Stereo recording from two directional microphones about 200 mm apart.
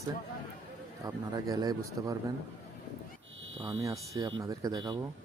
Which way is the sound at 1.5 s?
20° right (ahead or behind).